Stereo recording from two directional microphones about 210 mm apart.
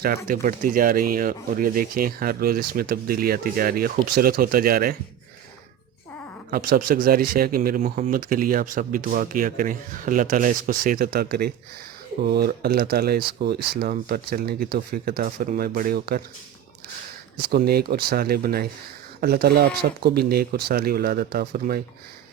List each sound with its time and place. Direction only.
0.3 s speech: 40° right (ahead or behind)
6.5 s speech: 45° right (ahead or behind)
17.5 s speech: 50° right (ahead or behind)